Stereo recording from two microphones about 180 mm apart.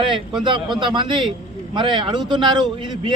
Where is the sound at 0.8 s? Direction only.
25° right (ahead or behind).